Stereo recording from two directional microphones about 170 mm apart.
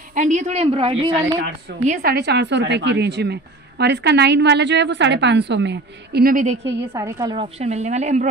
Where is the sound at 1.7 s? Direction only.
90° right; by 6.6 s 50° right (ahead or behind).